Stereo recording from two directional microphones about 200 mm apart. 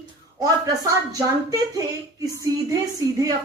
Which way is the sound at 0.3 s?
15° right (ahead or behind).